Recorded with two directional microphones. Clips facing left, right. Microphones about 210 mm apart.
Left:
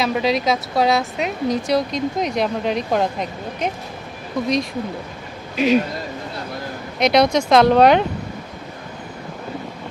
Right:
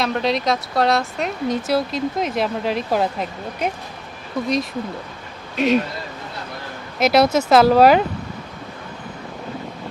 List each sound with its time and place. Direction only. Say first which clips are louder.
0.0 s speech: left 1 dB; centre (ahead or behind)
5.5 s speech: left 1 dB; centre (ahead or behind)
7.0 s speech: even; 5° right (ahead or behind)